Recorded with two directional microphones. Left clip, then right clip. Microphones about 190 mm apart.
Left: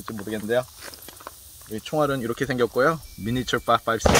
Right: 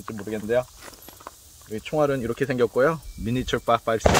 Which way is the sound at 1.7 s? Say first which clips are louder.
Right 1 dB; 20° right (ahead or behind).